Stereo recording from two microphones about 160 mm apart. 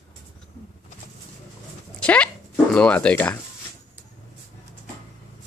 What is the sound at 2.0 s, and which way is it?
Speech, 10° left (ahead or behind).